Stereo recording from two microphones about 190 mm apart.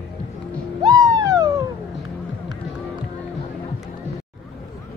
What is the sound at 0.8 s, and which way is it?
Owl, 20° right (ahead or behind).